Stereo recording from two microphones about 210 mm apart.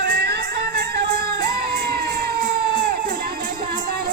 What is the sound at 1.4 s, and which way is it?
Crowd, 45° right (ahead or behind).